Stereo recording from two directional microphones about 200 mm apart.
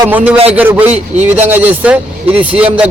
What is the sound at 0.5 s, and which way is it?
A man's voice, 10° right (ahead or behind).